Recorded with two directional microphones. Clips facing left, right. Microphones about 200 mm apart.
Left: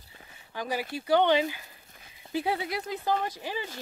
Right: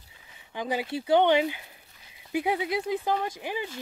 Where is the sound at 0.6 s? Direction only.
20° right (ahead or behind).